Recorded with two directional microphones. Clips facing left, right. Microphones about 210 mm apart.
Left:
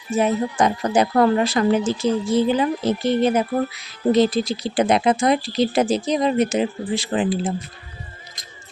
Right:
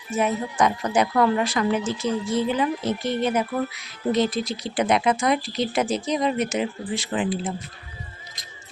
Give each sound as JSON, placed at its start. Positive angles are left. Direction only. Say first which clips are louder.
{"t": 0.1, "sound": "a woman's voice", "louder": "left 4 dB", "side_deg": 30}